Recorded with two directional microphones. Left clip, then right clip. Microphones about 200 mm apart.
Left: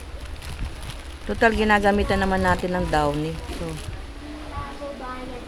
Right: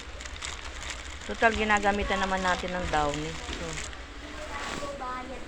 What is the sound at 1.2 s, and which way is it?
Speech, 40° left (ahead or behind).